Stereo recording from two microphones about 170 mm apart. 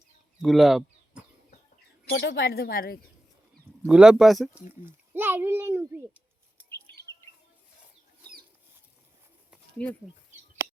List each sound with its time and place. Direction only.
0.4 s a sound: centre (ahead or behind)
2.0 s speech: 90° left; by 3.0 s 60° left (ahead or behind)
3.8 s speech: 5° right (ahead or behind)
4.7 s a child's voice: 10° right (ahead or behind)
5.9 s a sound: 15° right (ahead or behind)
9.8 s speech: 10° left (ahead or behind)